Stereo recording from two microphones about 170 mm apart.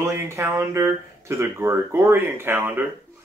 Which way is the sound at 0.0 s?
15° right (ahead or behind).